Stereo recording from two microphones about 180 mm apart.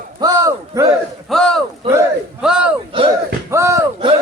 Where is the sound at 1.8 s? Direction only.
15° right (ahead or behind).